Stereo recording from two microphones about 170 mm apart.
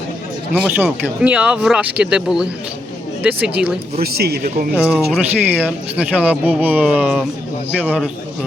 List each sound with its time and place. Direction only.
0.5 s speech: 5° right (ahead or behind)
4.0 s speech: 65° right (ahead or behind)
4.7 s speech: 5° right (ahead or behind)